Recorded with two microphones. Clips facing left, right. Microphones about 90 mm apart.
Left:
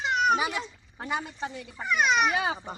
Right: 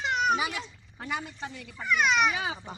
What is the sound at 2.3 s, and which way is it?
Speech, 50° left (ahead or behind).